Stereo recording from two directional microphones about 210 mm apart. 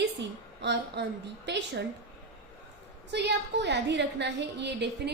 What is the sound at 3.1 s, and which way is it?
A woman's voice, 55° right (ahead or behind).